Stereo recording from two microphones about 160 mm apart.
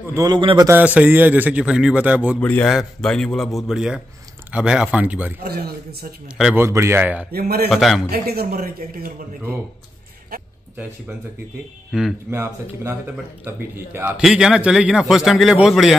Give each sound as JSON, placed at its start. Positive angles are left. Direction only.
{"t": 0.1, "sound": "a man's voice", "side_deg": -20}
{"t": 0.4, "sound": "a man's voice", "side_deg": -30}
{"t": 0.7, "sound": "a man's voice", "side_deg": -10}
{"t": 2.4, "sound": "a man's voice", "side_deg": 10}
{"t": 5.4, "sound": "a man's voice", "side_deg": -80}
{"t": 6.5, "sound": "a man's voice", "side_deg": -15}
{"t": 7.3, "sound": "speech", "side_deg": -75}
{"t": 7.7, "sound": "a man's voice", "side_deg": 0}
{"t": 8.1, "sound": "speech", "side_deg": -75}
{"t": 10.3, "sound": "speech", "side_deg": -70}
{"t": 11.9, "sound": "a man's voice", "side_deg": 0}
{"t": 12.3, "sound": "a man's voice", "side_deg": -15}